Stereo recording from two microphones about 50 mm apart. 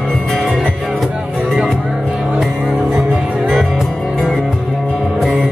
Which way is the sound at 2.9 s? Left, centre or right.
Centre.